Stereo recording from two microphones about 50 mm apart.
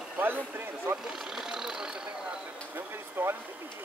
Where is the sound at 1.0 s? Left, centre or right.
Centre.